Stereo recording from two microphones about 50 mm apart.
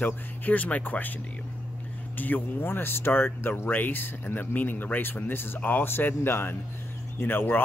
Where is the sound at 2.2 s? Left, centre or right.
Left.